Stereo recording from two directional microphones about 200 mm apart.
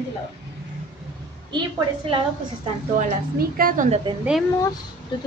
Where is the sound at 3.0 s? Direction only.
45° right (ahead or behind).